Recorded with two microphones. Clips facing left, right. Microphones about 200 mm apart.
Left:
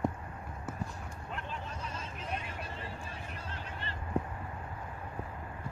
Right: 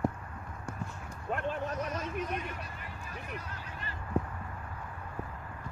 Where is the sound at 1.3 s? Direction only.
55° right (ahead or behind).